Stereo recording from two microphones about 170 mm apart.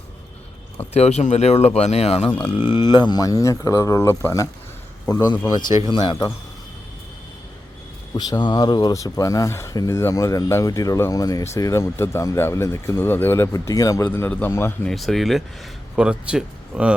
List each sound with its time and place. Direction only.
0.9 s speech: 40° left (ahead or behind); by 6.3 s 25° left (ahead or behind)
8.1 s speech: 25° left (ahead or behind)
14.8 s speech: centre (ahead or behind)